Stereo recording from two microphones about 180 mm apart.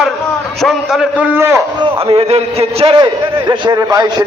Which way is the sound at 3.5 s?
20° right (ahead or behind).